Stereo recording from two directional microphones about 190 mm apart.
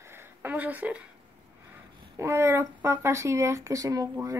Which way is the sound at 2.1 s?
15° right (ahead or behind).